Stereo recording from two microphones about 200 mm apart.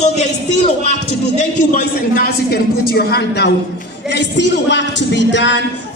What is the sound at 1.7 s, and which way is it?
A woman's voice, 45° left (ahead or behind).